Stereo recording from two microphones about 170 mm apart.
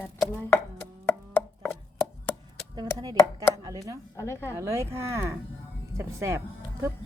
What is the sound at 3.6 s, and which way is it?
Speech, 20° right (ahead or behind).